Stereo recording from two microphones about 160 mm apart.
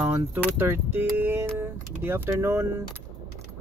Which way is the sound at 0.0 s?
10° right (ahead or behind).